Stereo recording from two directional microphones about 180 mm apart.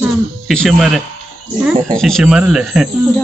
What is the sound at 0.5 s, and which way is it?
Speech, centre (ahead or behind).